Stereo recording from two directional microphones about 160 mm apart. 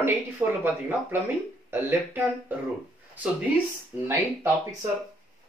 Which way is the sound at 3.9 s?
15° right (ahead or behind).